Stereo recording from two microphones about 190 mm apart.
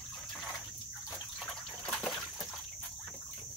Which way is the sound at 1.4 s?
5° left (ahead or behind).